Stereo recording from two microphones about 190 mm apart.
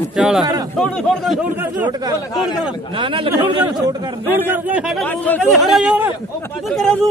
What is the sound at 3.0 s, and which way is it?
Speech, 25° right (ahead or behind).